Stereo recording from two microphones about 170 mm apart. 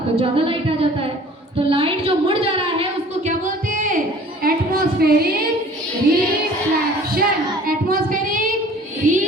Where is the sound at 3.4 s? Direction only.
50° right (ahead or behind).